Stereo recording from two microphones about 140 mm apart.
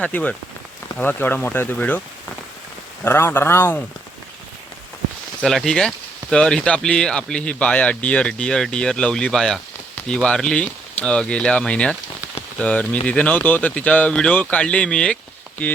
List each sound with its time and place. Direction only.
0.0 s speech: 10° left (ahead or behind)
3.0 s speech: 15° left (ahead or behind)
5.4 s speech: centre (ahead or behind)